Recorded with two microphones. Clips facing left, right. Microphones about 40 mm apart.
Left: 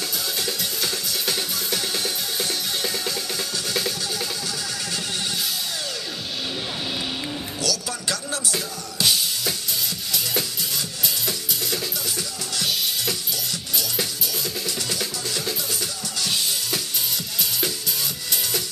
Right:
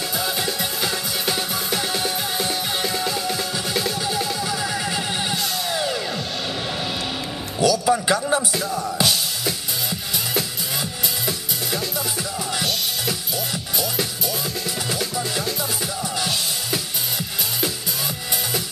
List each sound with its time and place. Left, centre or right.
0.5 s music: centre
4.5 s music: centre
7.6 s a sound: centre
14.9 s music: centre